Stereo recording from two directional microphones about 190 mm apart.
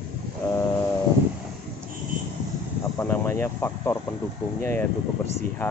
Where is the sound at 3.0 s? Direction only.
15° left (ahead or behind).